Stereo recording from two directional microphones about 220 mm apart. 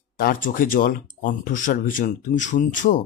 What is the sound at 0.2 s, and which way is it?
Speech, 40° left (ahead or behind).